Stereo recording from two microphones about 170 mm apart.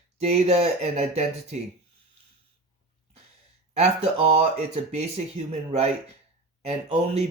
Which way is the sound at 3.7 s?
40° right (ahead or behind).